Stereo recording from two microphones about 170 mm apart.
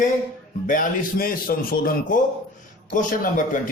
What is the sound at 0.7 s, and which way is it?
A man's voice, 55° left (ahead or behind).